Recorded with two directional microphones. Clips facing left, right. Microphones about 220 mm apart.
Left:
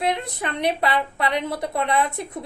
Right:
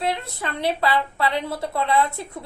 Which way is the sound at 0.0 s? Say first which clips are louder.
Left 2 dB; 20° left (ahead or behind).